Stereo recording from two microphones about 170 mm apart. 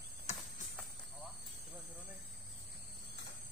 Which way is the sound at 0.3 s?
40° left (ahead or behind).